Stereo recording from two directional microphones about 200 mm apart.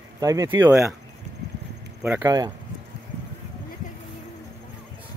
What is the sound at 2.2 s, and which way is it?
Speech, 20° right (ahead or behind).